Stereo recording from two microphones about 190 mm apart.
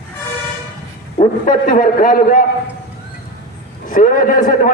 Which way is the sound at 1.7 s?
45° left (ahead or behind).